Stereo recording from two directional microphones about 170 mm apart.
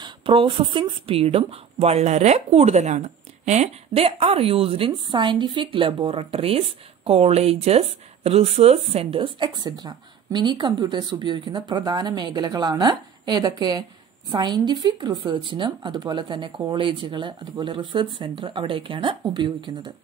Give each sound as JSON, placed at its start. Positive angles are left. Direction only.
{"t": 0.0, "sound": "speech", "side_deg": -30}